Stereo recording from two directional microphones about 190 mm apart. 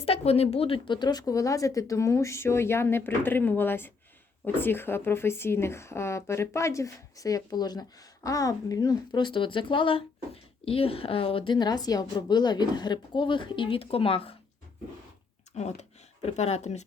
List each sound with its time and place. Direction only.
0.0 s a woman's voice: 30° left (ahead or behind)
15.5 s speech: 35° left (ahead or behind)